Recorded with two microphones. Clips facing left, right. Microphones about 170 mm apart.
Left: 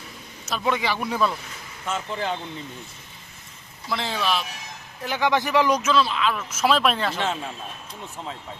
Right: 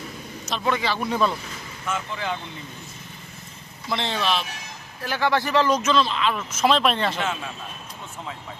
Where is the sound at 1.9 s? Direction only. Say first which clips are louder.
Left 1 dB; 35° left (ahead or behind).